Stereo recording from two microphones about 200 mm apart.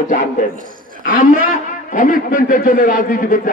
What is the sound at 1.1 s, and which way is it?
A man's voice, 40° left (ahead or behind).